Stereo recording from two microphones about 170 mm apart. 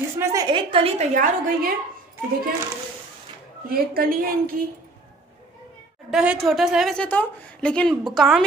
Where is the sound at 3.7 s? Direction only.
60° right (ahead or behind).